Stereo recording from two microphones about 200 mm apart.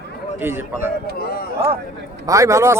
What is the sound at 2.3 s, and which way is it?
Speech, 15° right (ahead or behind).